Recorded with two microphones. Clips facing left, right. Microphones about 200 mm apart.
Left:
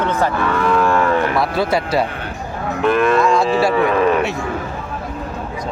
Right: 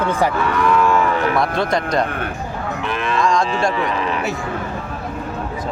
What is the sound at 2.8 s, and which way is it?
Cattle, 50° left (ahead or behind).